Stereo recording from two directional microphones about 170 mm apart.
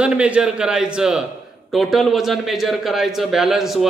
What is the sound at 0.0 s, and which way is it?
A man's voice, 5° right (ahead or behind).